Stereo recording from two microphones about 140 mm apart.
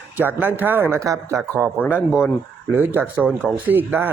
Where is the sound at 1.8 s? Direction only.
15° left (ahead or behind).